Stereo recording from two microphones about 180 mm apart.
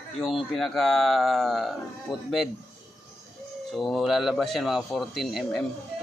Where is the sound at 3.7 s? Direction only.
Centre (ahead or behind).